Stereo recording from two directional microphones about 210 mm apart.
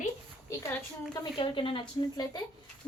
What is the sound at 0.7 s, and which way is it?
A woman's voice, 20° left (ahead or behind).